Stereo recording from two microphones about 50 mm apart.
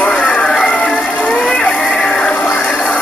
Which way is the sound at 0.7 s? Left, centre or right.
Left.